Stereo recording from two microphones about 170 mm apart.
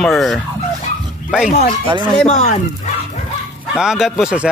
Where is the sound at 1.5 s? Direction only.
55° left (ahead or behind).